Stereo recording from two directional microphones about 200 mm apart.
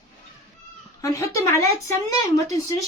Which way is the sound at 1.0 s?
15° left (ahead or behind).